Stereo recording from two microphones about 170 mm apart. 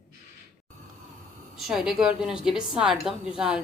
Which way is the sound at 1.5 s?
Centre (ahead or behind).